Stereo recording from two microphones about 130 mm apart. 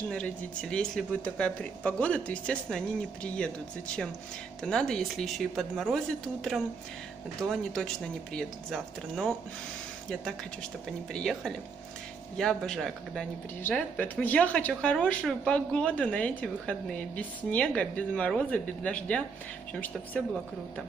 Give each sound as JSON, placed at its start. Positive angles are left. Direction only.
{"t": 0.1, "sound": "speech", "side_deg": 5}
{"t": 11.1, "sound": "speech", "side_deg": 0}
{"t": 13.7, "sound": "speech", "side_deg": 15}